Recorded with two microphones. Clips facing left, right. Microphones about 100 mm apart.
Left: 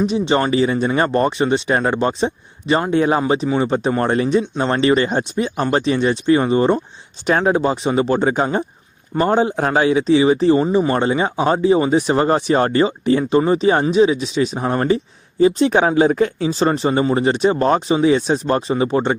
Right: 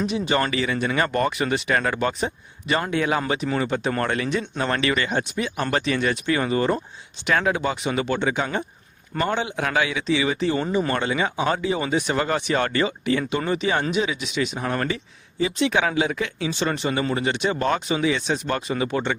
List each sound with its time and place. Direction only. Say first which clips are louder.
0.0 s speech: left 6 dB; 25° left (ahead or behind)